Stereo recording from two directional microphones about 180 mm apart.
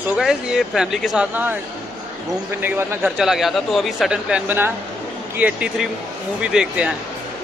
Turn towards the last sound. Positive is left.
turn(degrees=-5)  # may be behind; listen again after turning